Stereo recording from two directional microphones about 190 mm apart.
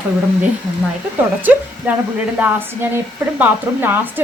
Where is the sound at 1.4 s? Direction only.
10° right (ahead or behind).